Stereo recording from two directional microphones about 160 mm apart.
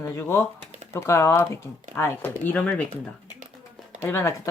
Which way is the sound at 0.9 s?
15° left (ahead or behind).